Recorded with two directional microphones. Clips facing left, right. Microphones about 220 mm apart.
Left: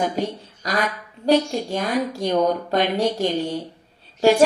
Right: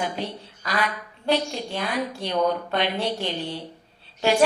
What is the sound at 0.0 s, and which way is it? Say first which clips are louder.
A woman's voice: left 6 dB; 45° left (ahead or behind).